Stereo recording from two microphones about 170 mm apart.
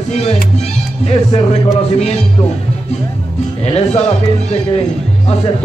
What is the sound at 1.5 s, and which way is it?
Speech, 40° left (ahead or behind).